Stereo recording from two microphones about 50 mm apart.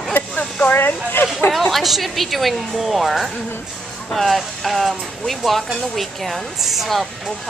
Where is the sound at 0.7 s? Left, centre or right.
Left.